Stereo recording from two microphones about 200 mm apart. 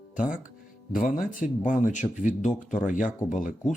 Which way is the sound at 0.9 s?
45° left (ahead or behind).